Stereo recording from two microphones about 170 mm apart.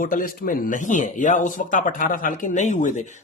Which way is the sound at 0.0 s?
55° left (ahead or behind).